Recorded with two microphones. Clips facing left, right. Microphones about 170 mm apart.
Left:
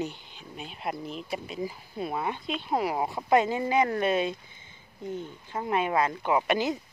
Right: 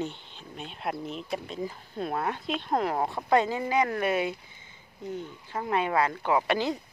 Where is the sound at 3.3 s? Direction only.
20° left (ahead or behind).